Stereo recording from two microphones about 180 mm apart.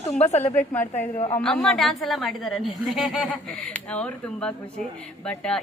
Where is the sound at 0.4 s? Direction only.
10° left (ahead or behind).